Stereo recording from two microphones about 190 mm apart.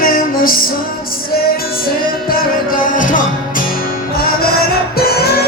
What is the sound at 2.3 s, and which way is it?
Music, 50° left (ahead or behind).